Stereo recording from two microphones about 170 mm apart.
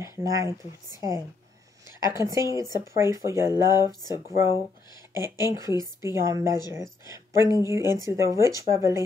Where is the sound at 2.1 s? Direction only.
15° right (ahead or behind).